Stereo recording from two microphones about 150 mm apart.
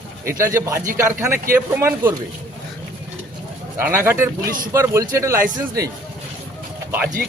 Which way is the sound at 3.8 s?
15° right (ahead or behind).